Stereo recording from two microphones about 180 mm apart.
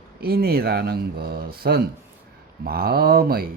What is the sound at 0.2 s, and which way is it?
Speech, 60° right (ahead or behind).